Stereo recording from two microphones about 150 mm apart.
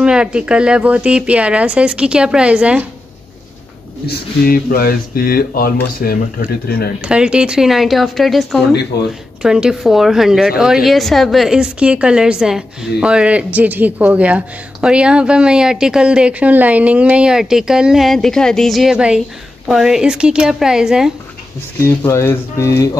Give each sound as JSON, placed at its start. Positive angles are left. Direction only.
{"t": 0.0, "sound": "speech", "side_deg": -5}
{"t": 4.0, "sound": "speech", "side_deg": 85}
{"t": 7.1, "sound": "a woman's voice", "side_deg": -5}
{"t": 21.8, "sound": "speech", "side_deg": 20}